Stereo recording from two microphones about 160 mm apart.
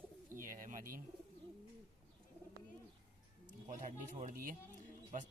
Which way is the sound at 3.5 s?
55° right (ahead or behind).